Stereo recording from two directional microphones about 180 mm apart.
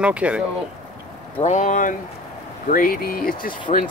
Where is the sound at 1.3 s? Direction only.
40° left (ahead or behind).